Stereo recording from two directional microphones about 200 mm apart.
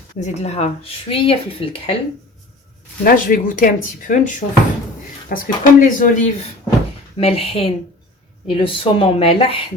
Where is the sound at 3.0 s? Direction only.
45° left (ahead or behind).